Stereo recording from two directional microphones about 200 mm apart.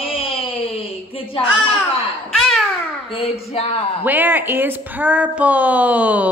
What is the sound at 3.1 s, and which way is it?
Speech, 30° left (ahead or behind).